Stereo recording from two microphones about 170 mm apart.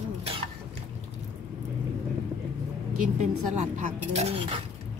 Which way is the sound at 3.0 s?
45° right (ahead or behind).